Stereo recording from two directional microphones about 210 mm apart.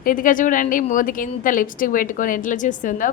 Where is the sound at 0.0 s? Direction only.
40° left (ahead or behind).